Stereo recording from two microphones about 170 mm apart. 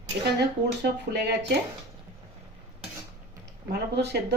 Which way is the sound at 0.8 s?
75° right (ahead or behind).